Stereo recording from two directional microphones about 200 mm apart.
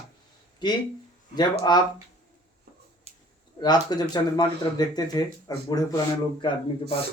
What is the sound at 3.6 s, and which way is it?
Speech, 20° left (ahead or behind).